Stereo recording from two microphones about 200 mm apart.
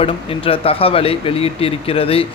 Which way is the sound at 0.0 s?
30° left (ahead or behind).